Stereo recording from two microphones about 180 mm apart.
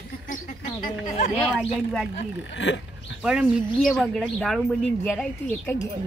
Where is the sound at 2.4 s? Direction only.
85° left.